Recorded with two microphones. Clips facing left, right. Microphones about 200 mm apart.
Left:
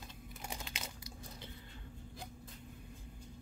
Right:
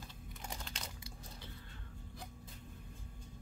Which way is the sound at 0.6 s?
5° left (ahead or behind).